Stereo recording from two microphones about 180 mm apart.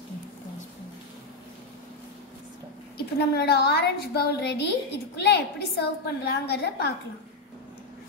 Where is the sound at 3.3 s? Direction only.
65° left (ahead or behind).